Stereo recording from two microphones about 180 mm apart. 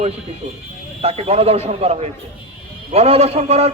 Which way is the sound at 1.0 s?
35° right (ahead or behind).